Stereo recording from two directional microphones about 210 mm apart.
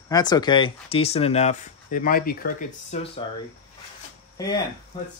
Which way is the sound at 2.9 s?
30° left (ahead or behind).